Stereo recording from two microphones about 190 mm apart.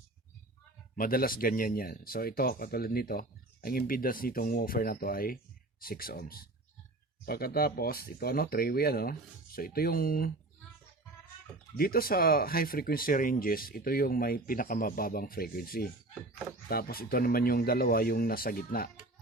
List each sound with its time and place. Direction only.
0.9 s speech: 50° left (ahead or behind)
11.8 s speech: 50° left (ahead or behind)